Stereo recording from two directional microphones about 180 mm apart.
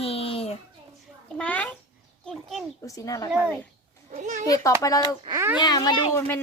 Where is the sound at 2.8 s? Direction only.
20° left (ahead or behind).